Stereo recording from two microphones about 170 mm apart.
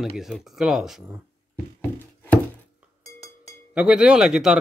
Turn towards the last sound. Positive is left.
turn(degrees=-5)  # may be behind; listen again after turning